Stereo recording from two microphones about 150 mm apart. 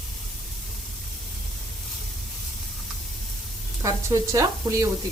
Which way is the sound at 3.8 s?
20° right (ahead or behind).